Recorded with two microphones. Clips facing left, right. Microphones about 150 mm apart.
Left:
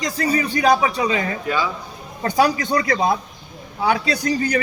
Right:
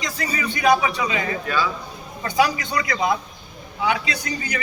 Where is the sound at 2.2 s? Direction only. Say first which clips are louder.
Left 3 dB; 35° left (ahead or behind).